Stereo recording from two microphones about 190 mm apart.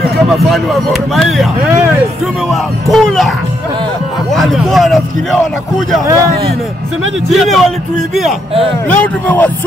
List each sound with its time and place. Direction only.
1.1 s a man's voice: centre (ahead or behind)
2.9 s a man's voice: centre (ahead or behind)
4.4 s a man's voice: centre (ahead or behind)
6.0 s speech: 15° right (ahead or behind)
7.3 s a man's voice: centre (ahead or behind)
8.9 s speech: 10° left (ahead or behind)